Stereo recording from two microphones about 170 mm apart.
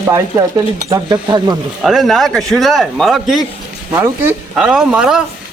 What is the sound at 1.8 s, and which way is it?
Speech, centre (ahead or behind).